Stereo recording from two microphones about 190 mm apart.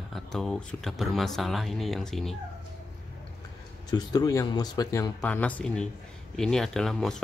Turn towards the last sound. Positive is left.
turn(degrees=0)  # may be behind; listen again after turning